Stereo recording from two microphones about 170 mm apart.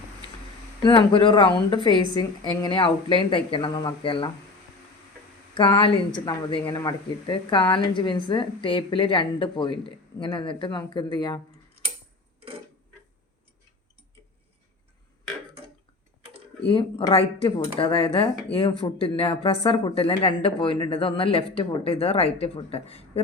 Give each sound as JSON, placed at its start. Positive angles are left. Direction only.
{"t": 0.8, "sound": "speech", "side_deg": 30}
{"t": 5.5, "sound": "speech", "side_deg": 25}
{"t": 16.6, "sound": "speech", "side_deg": 30}